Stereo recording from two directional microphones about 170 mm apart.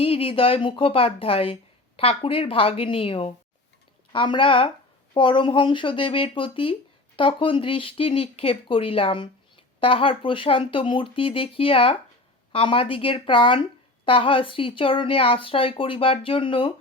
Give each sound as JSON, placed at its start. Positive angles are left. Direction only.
{"t": 0.0, "sound": "speech", "side_deg": 35}